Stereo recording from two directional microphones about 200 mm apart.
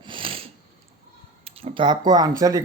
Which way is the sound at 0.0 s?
25° right (ahead or behind).